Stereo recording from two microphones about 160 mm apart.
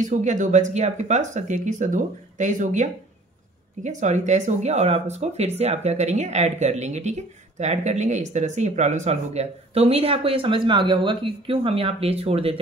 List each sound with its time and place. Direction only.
0.0 s speech: 50° right (ahead or behind)